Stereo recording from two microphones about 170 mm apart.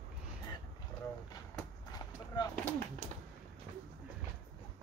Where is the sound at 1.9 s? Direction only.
25° left (ahead or behind).